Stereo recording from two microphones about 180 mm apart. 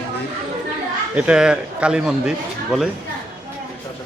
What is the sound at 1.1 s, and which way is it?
A man's voice, 5° right (ahead or behind).